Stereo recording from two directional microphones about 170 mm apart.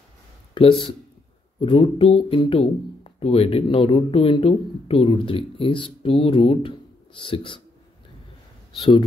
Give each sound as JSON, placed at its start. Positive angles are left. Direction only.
{"t": 0.6, "sound": "speech", "side_deg": 30}